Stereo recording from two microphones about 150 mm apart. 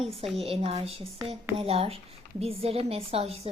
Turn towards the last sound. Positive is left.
turn(degrees=-40)  # may be behind; listen again after turning